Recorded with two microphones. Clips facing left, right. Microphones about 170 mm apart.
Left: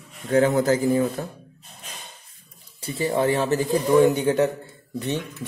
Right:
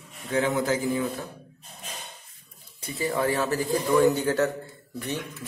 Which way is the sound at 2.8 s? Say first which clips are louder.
Left 4 dB; 25° left (ahead or behind).